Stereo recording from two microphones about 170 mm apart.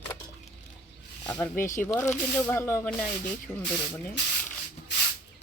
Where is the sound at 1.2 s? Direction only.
15° left (ahead or behind).